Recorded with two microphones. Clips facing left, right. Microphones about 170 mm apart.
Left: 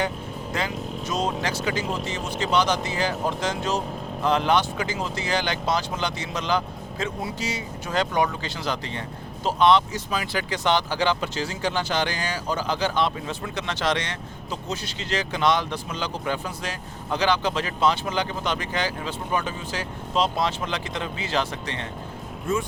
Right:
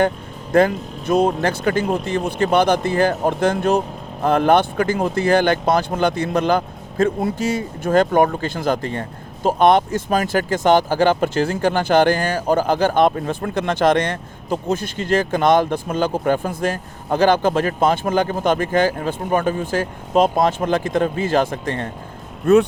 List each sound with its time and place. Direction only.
0.5 s speech: 55° right (ahead or behind)
22.5 s speech: 70° right (ahead or behind)